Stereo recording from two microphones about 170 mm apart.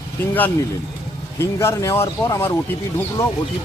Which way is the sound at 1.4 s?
15° left (ahead or behind).